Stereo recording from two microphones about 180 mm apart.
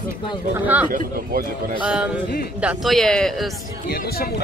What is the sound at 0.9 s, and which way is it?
Speech, 55° right (ahead or behind).